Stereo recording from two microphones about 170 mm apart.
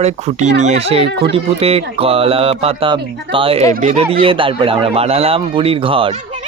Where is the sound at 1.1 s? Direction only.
75° right (ahead or behind).